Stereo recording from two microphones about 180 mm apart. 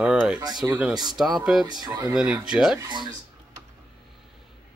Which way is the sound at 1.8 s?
20° right (ahead or behind).